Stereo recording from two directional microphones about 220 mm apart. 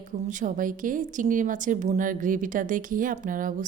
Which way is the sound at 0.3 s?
35° right (ahead or behind).